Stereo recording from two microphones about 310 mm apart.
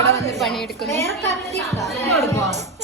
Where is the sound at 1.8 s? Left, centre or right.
Centre.